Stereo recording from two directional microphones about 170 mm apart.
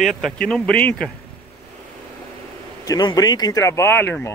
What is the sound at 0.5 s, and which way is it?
Speech, 5° left (ahead or behind).